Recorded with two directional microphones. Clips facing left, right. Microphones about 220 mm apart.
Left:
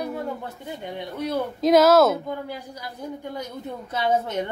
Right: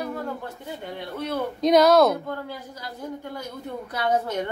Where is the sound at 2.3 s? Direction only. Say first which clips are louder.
Left 1 dB; 15° left (ahead or behind).